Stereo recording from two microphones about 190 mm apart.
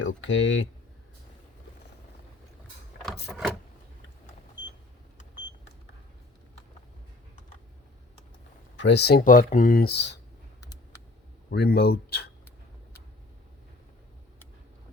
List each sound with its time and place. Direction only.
0.0 s speech: 80° left
3.3 s a sound: centre (ahead or behind)
8.7 s speech: 65° left (ahead or behind)
11.5 s speech: 60° left (ahead or behind)